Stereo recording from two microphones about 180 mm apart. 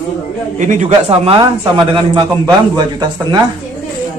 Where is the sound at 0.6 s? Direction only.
45° right (ahead or behind); by 2.8 s 25° right (ahead or behind).